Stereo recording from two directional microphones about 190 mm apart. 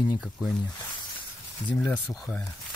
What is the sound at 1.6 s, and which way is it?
Speech, 5° left (ahead or behind).